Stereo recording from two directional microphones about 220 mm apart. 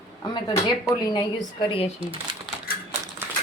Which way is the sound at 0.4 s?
20° left (ahead or behind).